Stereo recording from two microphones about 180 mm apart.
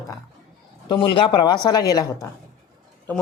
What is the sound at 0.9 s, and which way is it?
Speech, 30° left (ahead or behind).